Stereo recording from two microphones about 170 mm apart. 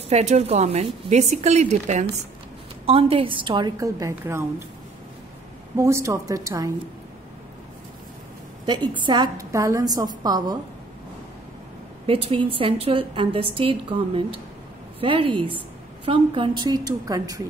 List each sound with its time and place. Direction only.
0.1 s a woman's voice: 40° right (ahead or behind); by 4.6 s 15° right (ahead or behind)
5.8 s a woman's voice: 15° right (ahead or behind)
8.6 s a woman's voice: 25° right (ahead or behind)
12.1 s a woman's voice: 35° right (ahead or behind)